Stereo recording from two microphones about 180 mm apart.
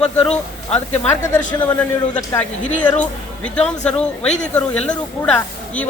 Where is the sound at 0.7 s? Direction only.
5° left (ahead or behind).